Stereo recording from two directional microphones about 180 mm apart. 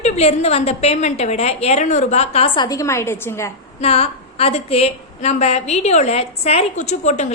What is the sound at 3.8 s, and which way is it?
A woman's voice, 35° left (ahead or behind).